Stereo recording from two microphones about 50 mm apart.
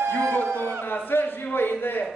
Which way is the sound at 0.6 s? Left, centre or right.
Left.